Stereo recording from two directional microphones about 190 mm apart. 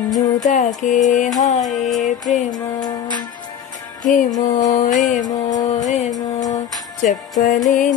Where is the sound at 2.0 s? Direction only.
40° left (ahead or behind).